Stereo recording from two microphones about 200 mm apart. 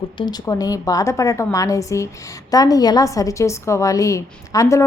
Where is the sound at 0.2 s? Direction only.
20° left (ahead or behind).